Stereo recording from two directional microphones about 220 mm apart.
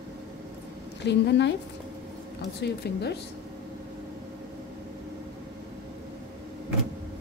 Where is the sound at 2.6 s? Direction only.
50° left (ahead or behind).